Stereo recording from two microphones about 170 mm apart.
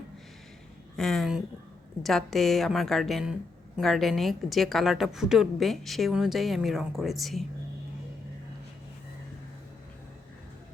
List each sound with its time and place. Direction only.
0.9 s a woman's voice: centre (ahead or behind)